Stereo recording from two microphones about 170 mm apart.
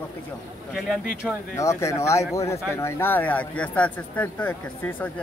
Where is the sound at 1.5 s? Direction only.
15° left (ahead or behind).